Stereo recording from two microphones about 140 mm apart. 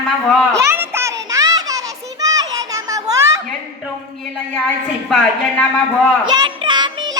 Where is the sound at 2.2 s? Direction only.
25° right (ahead or behind).